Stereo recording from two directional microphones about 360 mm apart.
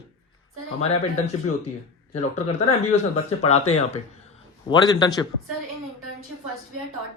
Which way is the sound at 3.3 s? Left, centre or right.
Centre.